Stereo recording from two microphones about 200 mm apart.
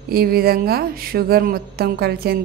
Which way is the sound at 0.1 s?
50° right (ahead or behind).